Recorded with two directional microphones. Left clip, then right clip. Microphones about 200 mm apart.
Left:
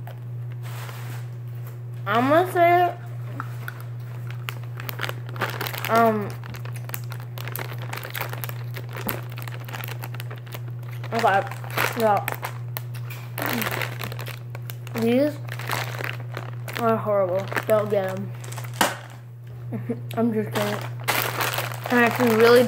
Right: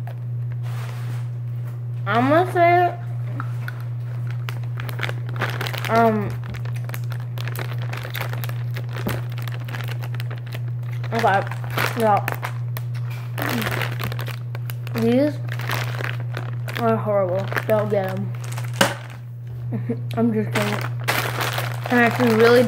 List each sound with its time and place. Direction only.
2.0 s speech: centre (ahead or behind)
4.5 s crumpling: 5° left (ahead or behind)
7.4 s a sound: centre (ahead or behind)
11.1 s crumpling: centre (ahead or behind)
19.7 s speech: 5° left (ahead or behind)
20.5 s speech: 30° right (ahead or behind)
21.0 s crumpling: centre (ahead or behind)